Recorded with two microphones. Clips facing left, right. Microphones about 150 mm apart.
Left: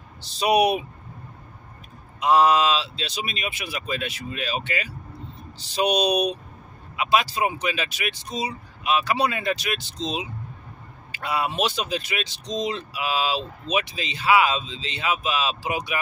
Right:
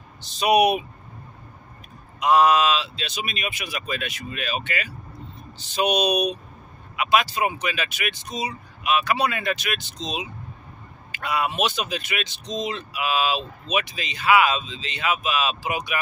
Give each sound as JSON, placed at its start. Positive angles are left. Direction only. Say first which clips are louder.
{"t": 0.2, "sound": "speech", "louder": "right 1 dB", "side_deg": 30}
{"t": 2.1, "sound": "speech", "louder": "even", "side_deg": 30}
{"t": 11.1, "sound": "speech", "louder": "right 1 dB", "side_deg": 30}